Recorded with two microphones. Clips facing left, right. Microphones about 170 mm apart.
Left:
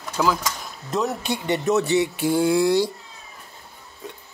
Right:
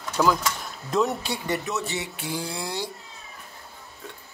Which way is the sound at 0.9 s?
Centre (ahead or behind).